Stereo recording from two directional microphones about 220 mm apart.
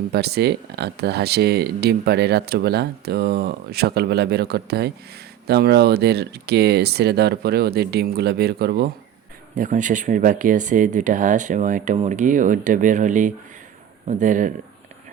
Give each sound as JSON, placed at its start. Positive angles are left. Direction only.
{"t": 0.1, "sound": "speech", "side_deg": -45}
{"t": 9.6, "sound": "speech", "side_deg": -35}